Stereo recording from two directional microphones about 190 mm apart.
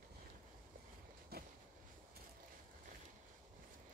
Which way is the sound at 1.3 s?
55° right (ahead or behind).